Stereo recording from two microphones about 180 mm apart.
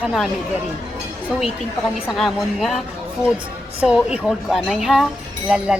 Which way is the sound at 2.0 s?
Centre (ahead or behind).